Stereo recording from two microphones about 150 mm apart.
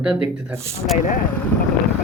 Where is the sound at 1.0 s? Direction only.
60° left (ahead or behind).